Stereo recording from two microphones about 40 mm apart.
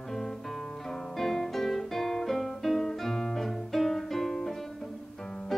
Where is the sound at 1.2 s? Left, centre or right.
Centre.